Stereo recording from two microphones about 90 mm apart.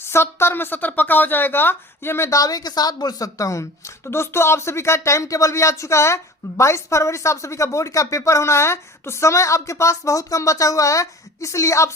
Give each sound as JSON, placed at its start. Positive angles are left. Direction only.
{"t": 0.1, "sound": "a woman's voice", "side_deg": 30}
{"t": 2.4, "sound": "speech", "side_deg": 45}